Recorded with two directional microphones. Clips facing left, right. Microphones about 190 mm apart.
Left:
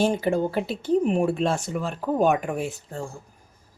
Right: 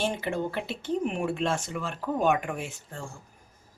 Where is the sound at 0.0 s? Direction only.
35° left (ahead or behind).